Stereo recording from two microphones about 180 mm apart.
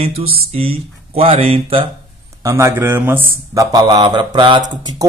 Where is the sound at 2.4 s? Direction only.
15° right (ahead or behind).